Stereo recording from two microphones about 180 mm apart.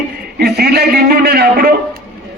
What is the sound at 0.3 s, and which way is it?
A man's voice, 60° right (ahead or behind).